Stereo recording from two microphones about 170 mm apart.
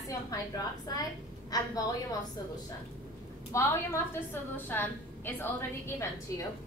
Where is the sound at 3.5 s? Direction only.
15° left (ahead or behind).